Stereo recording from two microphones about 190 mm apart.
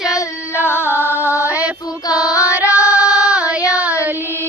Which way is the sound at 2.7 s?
15° left (ahead or behind).